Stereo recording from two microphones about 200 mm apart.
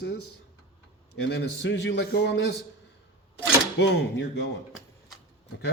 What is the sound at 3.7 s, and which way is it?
Cutlery, 60° left (ahead or behind).